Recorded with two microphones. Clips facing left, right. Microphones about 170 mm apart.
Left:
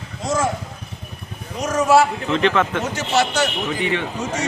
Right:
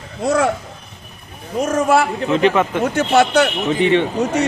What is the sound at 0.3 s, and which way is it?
Speech, 65° right (ahead or behind).